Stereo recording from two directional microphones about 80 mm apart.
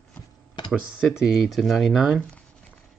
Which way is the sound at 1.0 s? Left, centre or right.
Centre.